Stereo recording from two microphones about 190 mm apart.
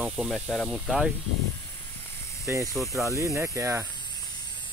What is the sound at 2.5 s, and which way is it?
Speech, 10° right (ahead or behind).